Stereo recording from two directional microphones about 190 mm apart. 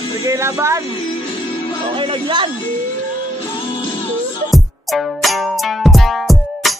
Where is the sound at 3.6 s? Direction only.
25° left (ahead or behind).